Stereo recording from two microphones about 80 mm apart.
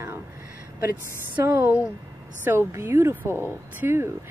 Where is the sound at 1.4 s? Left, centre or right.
Right.